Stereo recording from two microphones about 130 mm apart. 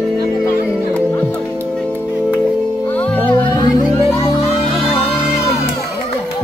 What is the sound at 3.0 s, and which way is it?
Music, 10° left (ahead or behind).